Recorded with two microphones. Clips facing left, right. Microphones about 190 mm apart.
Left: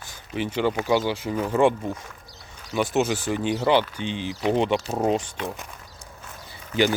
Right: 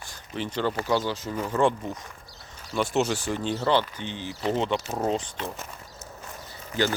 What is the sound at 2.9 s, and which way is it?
Speech, centre (ahead or behind).